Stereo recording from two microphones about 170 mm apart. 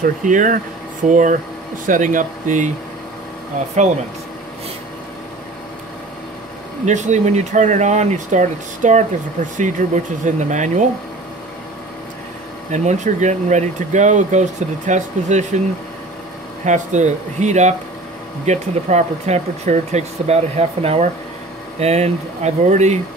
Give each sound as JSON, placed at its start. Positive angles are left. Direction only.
{"t": 0.0, "sound": "speech", "side_deg": -50}
{"t": 6.9, "sound": "speech", "side_deg": -45}
{"t": 12.7, "sound": "speech", "side_deg": -45}
{"t": 16.6, "sound": "speech", "side_deg": -45}